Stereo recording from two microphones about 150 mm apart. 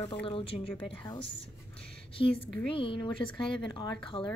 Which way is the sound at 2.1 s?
35° left (ahead or behind).